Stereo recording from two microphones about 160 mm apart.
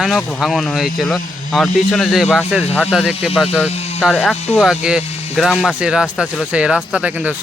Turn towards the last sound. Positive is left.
turn(degrees=-5)  # may be behind; listen again after turning